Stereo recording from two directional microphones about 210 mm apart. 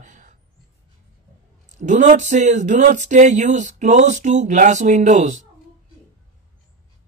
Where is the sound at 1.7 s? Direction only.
35° right (ahead or behind).